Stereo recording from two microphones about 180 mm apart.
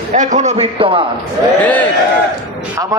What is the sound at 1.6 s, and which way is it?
Speech, 10° left (ahead or behind).